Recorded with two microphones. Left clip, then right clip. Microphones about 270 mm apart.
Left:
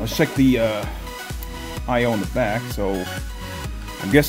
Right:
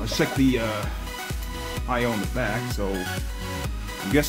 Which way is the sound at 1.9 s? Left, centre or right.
Left.